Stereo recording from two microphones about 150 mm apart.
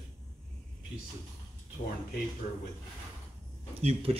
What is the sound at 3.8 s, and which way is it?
Speech, 40° right (ahead or behind).